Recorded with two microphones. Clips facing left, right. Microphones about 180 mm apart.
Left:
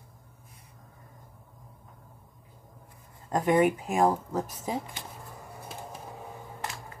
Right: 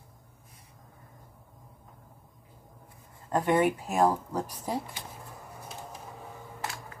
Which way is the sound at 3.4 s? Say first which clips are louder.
Left 2 dB; 10° left (ahead or behind).